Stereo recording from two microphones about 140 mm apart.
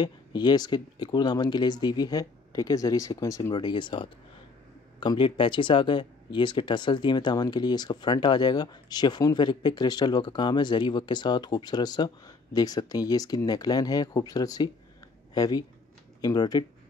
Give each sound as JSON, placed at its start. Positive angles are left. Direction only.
{"t": 0.0, "sound": "speech", "side_deg": 30}